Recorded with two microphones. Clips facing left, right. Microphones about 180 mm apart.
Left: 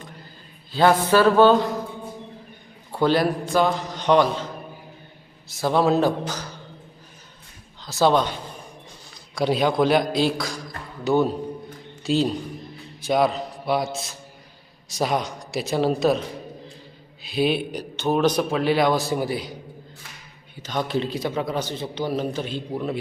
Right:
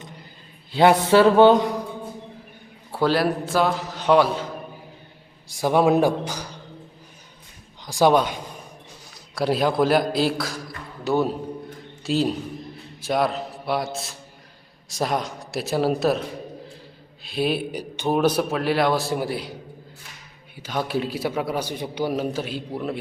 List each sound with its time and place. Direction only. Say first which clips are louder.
0.7 s a sound: right 2 dB; 20° right (ahead or behind)
2.9 s a man's voice: left 1 dB; 5° right (ahead or behind)
5.5 s a man's voice: right 1 dB; 15° right (ahead or behind)
7.8 s a man's voice: right 1 dB; 15° right (ahead or behind)
17.2 s a man's voice: left 2 dB; centre (ahead or behind)
20.6 s a man's voice: even; 10° right (ahead or behind)